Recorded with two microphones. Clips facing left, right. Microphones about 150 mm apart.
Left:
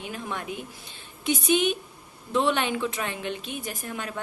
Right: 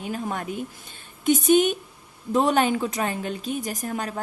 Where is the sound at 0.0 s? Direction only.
40° right (ahead or behind).